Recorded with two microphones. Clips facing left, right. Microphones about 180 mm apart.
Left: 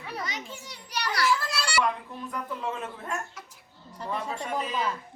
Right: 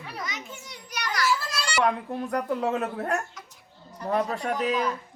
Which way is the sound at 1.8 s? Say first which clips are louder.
Right 7 dB; 65° right (ahead or behind).